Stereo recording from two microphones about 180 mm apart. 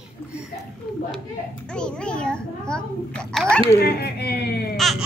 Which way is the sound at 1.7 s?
5° left (ahead or behind).